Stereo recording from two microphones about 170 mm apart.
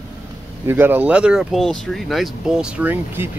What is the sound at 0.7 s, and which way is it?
A man's voice, 10° right (ahead or behind).